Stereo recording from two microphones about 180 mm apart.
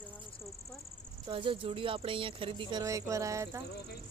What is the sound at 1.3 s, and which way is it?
Speech, 30° right (ahead or behind).